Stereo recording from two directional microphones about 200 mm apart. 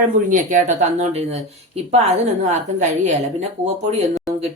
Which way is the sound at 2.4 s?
35° right (ahead or behind).